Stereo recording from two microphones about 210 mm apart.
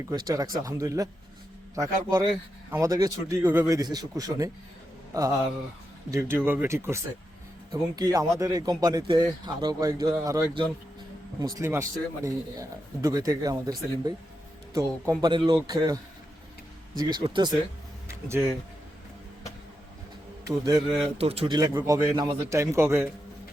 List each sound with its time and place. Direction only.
0.0 s a man's voice: 20° right (ahead or behind)
17.0 s a man's voice: 20° right (ahead or behind)
20.7 s speech: 20° right (ahead or behind)